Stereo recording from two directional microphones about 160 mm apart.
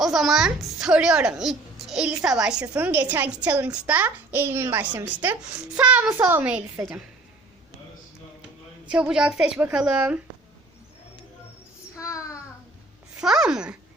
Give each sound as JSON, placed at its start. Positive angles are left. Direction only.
{"t": 0.0, "sound": "a woman's voice", "side_deg": 0}
{"t": 8.9, "sound": "a woman's voice", "side_deg": -5}
{"t": 11.9, "sound": "child singing", "side_deg": 20}
{"t": 13.1, "sound": "speech", "side_deg": -5}